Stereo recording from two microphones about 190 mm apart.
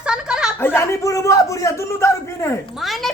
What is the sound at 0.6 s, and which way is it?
A man's voice, 15° left (ahead or behind).